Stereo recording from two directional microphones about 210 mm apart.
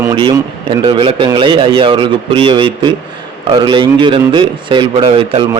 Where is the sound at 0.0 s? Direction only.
20° right (ahead or behind).